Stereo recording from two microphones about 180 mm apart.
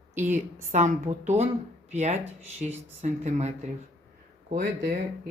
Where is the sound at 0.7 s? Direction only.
40° right (ahead or behind).